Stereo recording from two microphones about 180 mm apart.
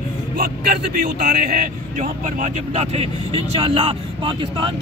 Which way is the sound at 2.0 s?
40° right (ahead or behind).